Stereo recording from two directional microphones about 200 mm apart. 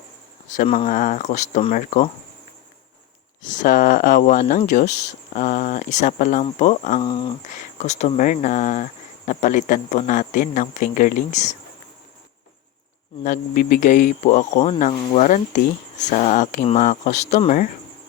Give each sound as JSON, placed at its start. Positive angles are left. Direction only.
{"t": 0.4, "sound": "speech", "side_deg": 40}
{"t": 3.4, "sound": "speech", "side_deg": 40}
{"t": 7.0, "sound": "speech", "side_deg": 20}
{"t": 7.4, "sound": "speech", "side_deg": 35}
{"t": 13.2, "sound": "speech", "side_deg": 40}